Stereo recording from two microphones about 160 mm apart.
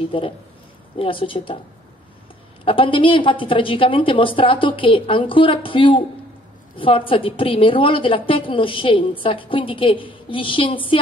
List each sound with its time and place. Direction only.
0.0 s a woman's voice: 35° left (ahead or behind)
2.6 s a woman's voice: 35° left (ahead or behind)